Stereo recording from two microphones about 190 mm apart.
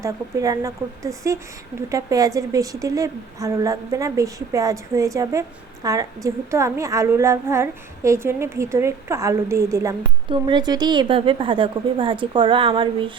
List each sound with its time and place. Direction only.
0.0 s a woman's voice: 15° right (ahead or behind)